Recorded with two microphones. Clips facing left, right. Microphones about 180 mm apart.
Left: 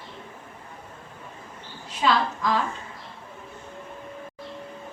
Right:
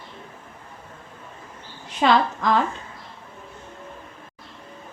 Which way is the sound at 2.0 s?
70° right (ahead or behind).